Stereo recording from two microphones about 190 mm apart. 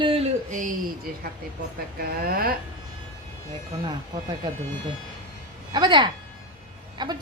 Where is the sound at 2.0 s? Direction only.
55° right (ahead or behind).